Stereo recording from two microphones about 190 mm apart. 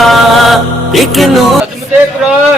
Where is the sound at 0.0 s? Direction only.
Centre (ahead or behind).